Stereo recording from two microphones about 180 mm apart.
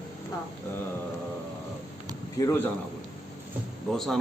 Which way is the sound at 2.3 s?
15° left (ahead or behind).